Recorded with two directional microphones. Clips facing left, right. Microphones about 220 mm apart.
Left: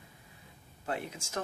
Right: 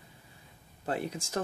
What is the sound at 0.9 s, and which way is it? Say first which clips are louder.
Speech: right 4 dB; 35° right (ahead or behind).